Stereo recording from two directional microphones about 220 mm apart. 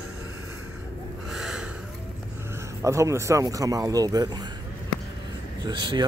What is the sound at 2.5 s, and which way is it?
Speech, 15° right (ahead or behind).